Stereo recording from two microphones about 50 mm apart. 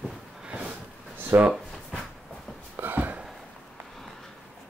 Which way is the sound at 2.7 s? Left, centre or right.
Right.